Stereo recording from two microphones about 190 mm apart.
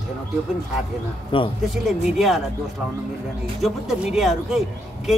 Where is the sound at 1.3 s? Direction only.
25° left (ahead or behind).